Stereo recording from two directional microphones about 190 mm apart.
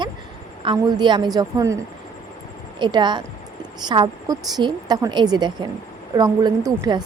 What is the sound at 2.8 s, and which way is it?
A woman's voice, 25° right (ahead or behind).